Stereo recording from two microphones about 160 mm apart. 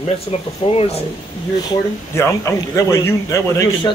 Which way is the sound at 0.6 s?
35° left (ahead or behind).